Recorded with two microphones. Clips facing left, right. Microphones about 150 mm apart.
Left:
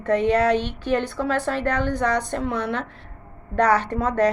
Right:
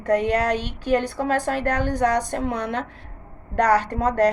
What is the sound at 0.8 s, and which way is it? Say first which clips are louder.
A woman's voice: right 4 dB; 40° right (ahead or behind).